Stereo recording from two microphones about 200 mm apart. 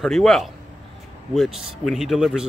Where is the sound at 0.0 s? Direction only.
Centre (ahead or behind).